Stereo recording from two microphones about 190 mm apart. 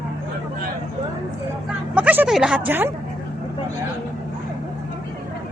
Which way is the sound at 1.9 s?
10° right (ahead or behind).